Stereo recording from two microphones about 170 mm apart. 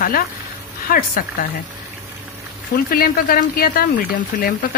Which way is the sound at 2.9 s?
60° left (ahead or behind).